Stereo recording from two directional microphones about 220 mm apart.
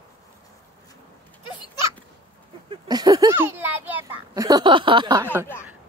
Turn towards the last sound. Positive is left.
turn(degrees=-15)  # may be behind; listen again after turning